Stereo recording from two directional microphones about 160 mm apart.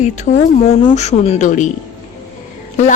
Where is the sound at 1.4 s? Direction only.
50° left (ahead or behind).